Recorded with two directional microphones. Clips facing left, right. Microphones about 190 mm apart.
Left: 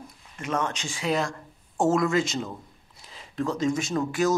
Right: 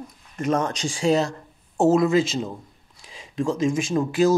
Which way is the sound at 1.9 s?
20° right (ahead or behind).